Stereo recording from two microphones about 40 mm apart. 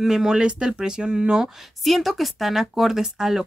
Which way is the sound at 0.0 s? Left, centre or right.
Centre.